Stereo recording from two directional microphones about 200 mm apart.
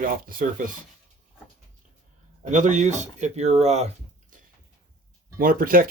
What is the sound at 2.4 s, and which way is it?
Speech, 40° right (ahead or behind).